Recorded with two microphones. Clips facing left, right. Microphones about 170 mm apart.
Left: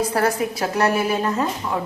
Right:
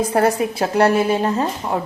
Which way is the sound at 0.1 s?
25° right (ahead or behind).